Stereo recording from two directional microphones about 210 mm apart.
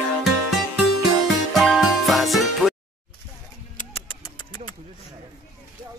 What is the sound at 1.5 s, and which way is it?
Music, centre (ahead or behind).